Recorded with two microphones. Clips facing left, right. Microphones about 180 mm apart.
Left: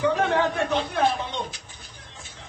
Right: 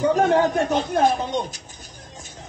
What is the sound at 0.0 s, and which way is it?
Speech, 40° right (ahead or behind).